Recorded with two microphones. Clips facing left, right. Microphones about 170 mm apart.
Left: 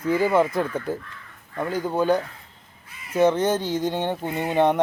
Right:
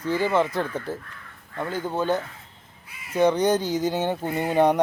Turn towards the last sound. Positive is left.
turn(degrees=0)  # may be behind; listen again after turning